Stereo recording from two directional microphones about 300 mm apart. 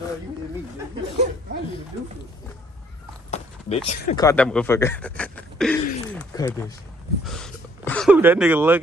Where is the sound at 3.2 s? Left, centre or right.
Left.